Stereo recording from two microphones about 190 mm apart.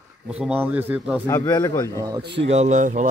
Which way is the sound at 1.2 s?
15° left (ahead or behind).